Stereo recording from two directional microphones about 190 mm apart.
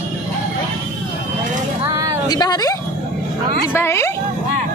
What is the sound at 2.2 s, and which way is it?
Speech, 20° left (ahead or behind).